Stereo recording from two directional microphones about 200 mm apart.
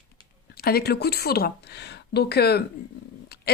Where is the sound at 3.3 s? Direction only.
50° left (ahead or behind).